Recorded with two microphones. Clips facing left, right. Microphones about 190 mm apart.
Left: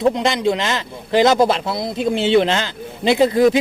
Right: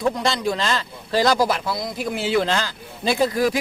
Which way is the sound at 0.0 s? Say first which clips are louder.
Left 5 dB; 20° left (ahead or behind).